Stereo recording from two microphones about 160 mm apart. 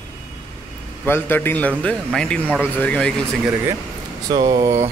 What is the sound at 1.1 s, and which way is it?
Speech, 15° left (ahead or behind).